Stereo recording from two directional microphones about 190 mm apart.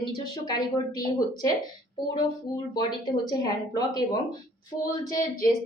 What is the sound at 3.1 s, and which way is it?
A woman's voice, 20° left (ahead or behind).